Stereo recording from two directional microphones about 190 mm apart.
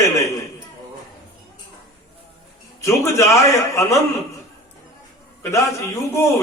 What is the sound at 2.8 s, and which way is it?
A man's voice, 15° left (ahead or behind).